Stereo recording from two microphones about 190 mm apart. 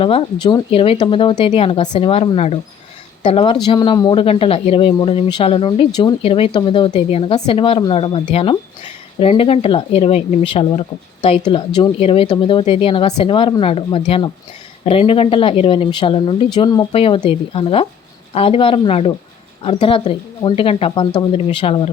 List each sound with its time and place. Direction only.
0.0 s speech: 25° left (ahead or behind)